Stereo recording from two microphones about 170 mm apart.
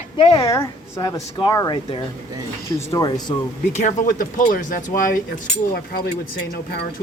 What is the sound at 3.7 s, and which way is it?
Speech, 50° left (ahead or behind).